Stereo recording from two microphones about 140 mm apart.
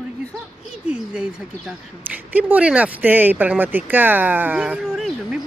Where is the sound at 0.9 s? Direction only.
5° right (ahead or behind).